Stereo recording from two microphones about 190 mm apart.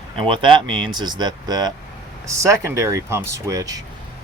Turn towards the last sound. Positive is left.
turn(degrees=-15)  # may be behind; listen again after turning